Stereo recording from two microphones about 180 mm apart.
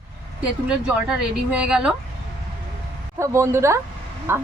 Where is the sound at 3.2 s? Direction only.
15° right (ahead or behind).